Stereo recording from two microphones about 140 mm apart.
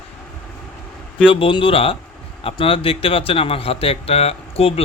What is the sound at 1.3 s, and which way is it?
Speech, 40° left (ahead or behind).